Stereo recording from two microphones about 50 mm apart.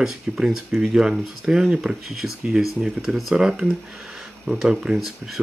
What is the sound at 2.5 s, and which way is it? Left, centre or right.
Speech, centre.